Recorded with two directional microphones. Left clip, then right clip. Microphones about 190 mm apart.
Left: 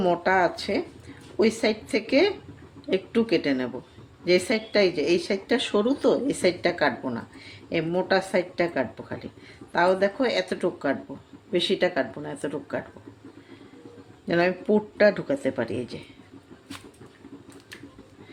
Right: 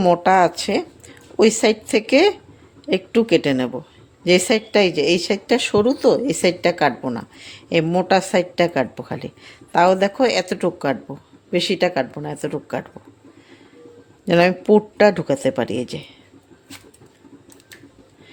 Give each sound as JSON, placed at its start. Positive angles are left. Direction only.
{"t": 0.0, "sound": "a woman's voice", "side_deg": -40}
{"t": 14.3, "sound": "speech", "side_deg": -45}